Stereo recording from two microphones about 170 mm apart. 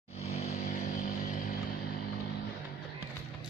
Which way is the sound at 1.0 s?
55° left (ahead or behind).